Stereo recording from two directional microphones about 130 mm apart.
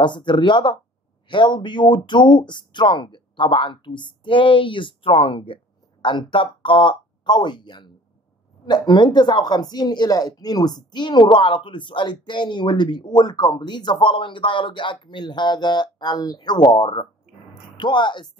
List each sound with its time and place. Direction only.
0.0 s a woman's voice: 35° left (ahead or behind)